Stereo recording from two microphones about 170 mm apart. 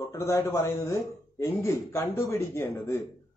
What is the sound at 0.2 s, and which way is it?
A man's voice, 15° left (ahead or behind).